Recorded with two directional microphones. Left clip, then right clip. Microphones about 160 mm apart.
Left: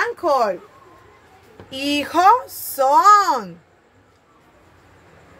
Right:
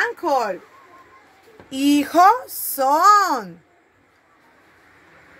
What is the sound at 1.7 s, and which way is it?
Speech, 90° right.